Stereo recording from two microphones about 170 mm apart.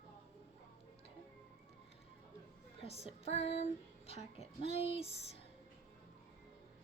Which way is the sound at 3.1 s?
35° left (ahead or behind).